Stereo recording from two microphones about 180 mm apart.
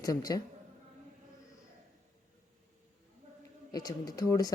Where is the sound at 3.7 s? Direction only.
20° left (ahead or behind).